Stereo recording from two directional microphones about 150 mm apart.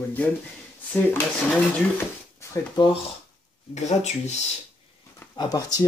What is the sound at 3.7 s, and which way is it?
Speech, 50° left (ahead or behind).